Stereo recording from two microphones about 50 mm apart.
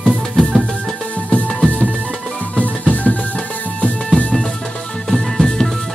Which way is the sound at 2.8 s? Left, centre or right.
Left.